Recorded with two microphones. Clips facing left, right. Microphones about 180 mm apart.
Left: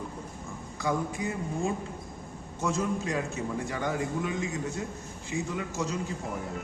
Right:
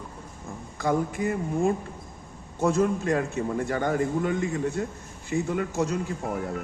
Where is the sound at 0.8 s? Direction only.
55° right (ahead or behind).